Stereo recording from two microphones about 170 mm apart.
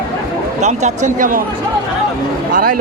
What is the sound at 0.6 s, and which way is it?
Speech, 45° right (ahead or behind).